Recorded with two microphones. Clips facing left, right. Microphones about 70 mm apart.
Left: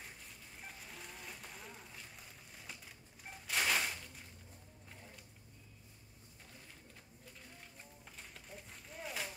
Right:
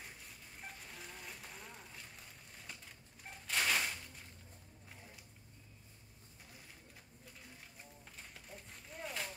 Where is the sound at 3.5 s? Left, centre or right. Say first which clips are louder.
Even; centre.